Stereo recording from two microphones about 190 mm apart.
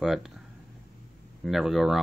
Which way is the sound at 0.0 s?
Centre (ahead or behind).